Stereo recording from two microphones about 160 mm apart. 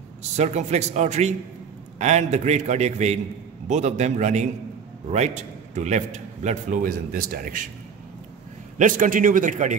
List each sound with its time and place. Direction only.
0.4 s a man's voice: 45° right (ahead or behind); by 7.6 s 60° right (ahead or behind)
8.7 s a man's voice: 55° right (ahead or behind)